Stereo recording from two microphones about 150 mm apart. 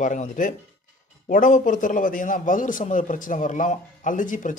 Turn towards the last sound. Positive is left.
turn(degrees=60)  # may be behind; listen again after turning